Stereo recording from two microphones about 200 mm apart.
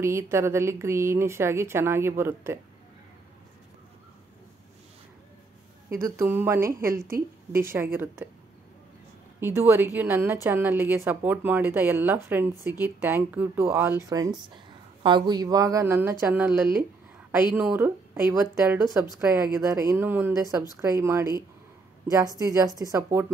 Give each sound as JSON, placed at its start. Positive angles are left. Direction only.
{"t": 0.0, "sound": "speech", "side_deg": -15}
{"t": 5.9, "sound": "speech", "side_deg": -15}
{"t": 9.4, "sound": "speech", "side_deg": -10}